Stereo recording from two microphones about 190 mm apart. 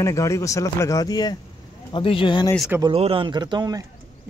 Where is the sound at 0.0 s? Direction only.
15° left (ahead or behind).